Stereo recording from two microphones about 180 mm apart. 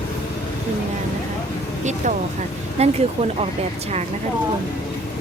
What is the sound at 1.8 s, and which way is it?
Speech, 40° right (ahead or behind).